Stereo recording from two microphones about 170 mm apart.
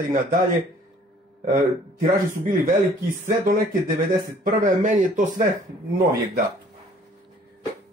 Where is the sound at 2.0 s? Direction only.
50° right (ahead or behind).